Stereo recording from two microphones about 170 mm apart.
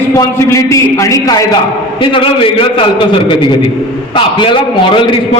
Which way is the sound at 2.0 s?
30° left (ahead or behind).